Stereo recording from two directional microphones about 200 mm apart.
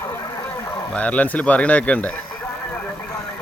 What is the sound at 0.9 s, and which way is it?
Speech, 5° left (ahead or behind).